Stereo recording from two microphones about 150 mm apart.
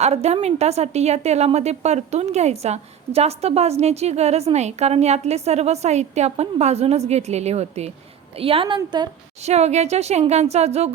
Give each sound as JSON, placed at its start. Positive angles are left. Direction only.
{"t": 0.0, "sound": "a woman's voice", "side_deg": -45}
{"t": 9.4, "sound": "a woman's voice", "side_deg": -45}